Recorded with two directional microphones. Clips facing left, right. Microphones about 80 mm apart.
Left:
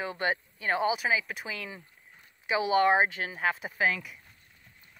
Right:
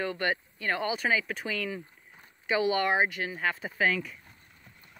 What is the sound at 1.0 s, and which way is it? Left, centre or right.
Speech, centre.